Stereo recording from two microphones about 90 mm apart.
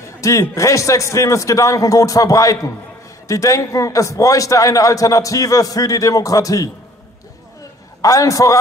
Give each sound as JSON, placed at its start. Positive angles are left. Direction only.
{"t": 0.2, "sound": "a man's voice", "side_deg": 35}
{"t": 8.0, "sound": "a man's voice", "side_deg": 40}